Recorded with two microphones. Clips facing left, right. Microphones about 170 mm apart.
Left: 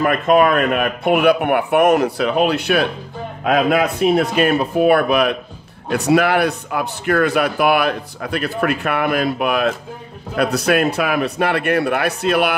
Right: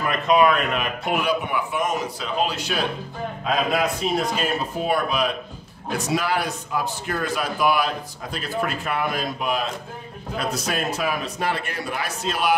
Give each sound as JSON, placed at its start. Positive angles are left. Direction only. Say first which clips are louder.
{"t": 0.0, "sound": "a man's voice", "louder": "left 5 dB", "side_deg": 50}